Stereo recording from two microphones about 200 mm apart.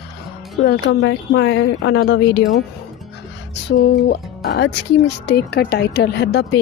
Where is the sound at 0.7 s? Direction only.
65° left (ahead or behind).